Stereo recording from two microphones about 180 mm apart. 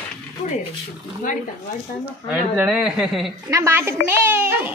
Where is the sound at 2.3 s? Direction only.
10° right (ahead or behind).